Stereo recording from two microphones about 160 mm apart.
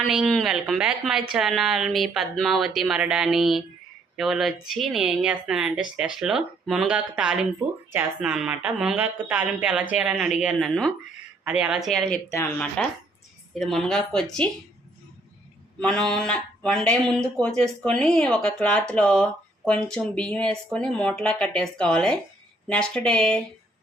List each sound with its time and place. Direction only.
0.1 s speech: centre (ahead or behind)
12.3 s speech: 15° left (ahead or behind)
13.5 s speech: centre (ahead or behind)
15.8 s speech: 5° left (ahead or behind)